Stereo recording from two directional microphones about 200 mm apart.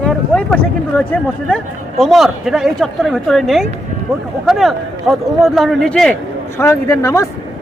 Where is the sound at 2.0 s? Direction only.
Centre (ahead or behind).